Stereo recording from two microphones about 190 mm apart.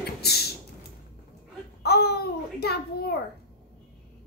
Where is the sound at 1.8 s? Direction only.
55° left (ahead or behind).